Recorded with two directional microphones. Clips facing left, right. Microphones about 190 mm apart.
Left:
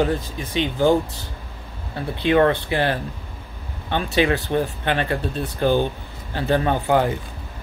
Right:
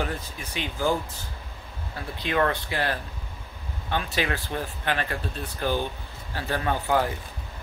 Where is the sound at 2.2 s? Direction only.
30° left (ahead or behind).